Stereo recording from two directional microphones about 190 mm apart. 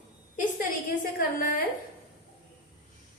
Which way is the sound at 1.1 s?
45° left (ahead or behind).